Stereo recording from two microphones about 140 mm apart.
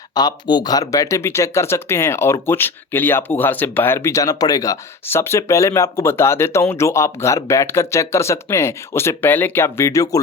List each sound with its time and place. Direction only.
0.1 s speech: 30° left (ahead or behind)